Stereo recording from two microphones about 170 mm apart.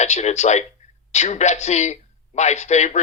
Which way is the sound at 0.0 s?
40° left (ahead or behind).